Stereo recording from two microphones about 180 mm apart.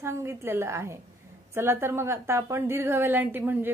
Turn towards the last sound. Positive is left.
turn(degrees=-10)  # may be behind; listen again after turning